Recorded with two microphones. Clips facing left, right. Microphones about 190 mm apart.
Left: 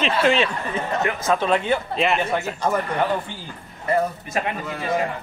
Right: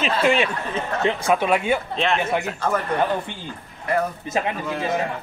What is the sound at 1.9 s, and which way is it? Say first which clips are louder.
Speech: left 1 dB; 5° left (ahead or behind).